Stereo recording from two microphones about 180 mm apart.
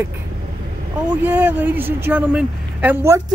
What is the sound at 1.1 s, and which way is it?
Speech, 10° right (ahead or behind).